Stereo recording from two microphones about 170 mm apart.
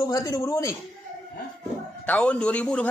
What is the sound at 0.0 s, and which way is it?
Speech, 20° left (ahead or behind).